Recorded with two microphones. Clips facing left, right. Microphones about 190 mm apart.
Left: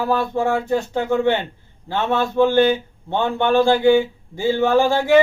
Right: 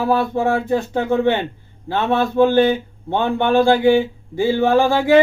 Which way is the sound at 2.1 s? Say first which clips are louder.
Right 2 dB; 15° right (ahead or behind).